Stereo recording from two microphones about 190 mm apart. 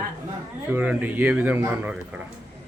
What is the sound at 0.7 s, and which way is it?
A man's voice, 10° right (ahead or behind).